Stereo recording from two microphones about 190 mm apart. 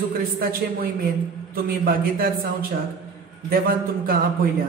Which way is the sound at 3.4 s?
50° right (ahead or behind).